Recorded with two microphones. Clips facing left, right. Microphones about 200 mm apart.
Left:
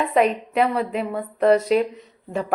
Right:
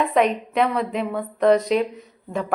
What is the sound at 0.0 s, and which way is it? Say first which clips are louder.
A woman's voice: even; 5° left (ahead or behind).